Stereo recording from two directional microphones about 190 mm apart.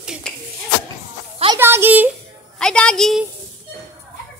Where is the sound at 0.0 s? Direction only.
5° right (ahead or behind).